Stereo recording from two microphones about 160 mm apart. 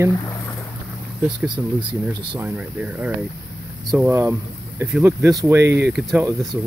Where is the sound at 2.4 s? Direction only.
10° right (ahead or behind).